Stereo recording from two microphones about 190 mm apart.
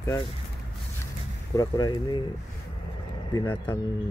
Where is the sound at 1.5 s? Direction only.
20° left (ahead or behind).